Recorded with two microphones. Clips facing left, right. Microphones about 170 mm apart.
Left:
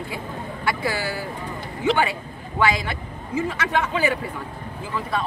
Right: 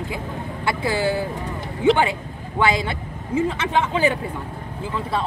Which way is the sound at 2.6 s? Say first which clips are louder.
Right 1 dB; 25° right (ahead or behind).